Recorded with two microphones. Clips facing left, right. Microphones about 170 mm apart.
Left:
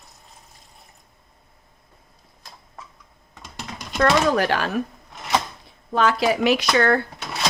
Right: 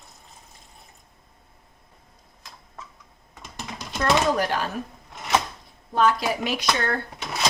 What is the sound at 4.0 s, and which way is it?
Speech, 75° left (ahead or behind).